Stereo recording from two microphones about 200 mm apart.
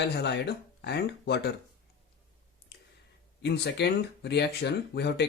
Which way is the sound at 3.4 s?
55° left (ahead or behind).